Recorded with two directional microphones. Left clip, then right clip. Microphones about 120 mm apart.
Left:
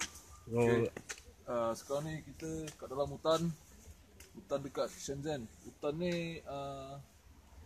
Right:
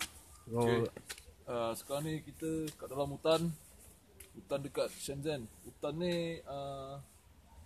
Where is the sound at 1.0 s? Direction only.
90° left.